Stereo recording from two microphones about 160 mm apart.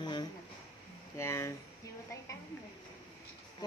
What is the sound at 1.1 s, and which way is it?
Speech, 15° left (ahead or behind).